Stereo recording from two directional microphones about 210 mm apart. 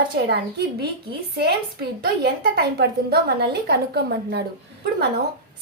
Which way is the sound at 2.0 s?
50° right (ahead or behind).